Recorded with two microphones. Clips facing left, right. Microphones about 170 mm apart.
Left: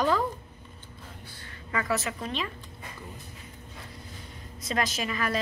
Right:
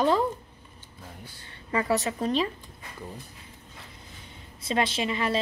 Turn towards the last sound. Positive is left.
turn(degrees=-25)  # may be behind; listen again after turning